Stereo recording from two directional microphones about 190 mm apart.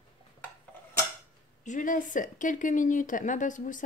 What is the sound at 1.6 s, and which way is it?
Speech, 40° left (ahead or behind).